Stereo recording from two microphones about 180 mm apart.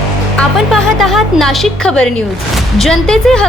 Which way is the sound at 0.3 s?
Centre (ahead or behind).